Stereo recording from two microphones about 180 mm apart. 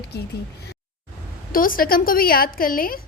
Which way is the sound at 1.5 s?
50° left (ahead or behind).